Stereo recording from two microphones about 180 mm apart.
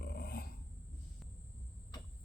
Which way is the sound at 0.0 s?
55° left (ahead or behind).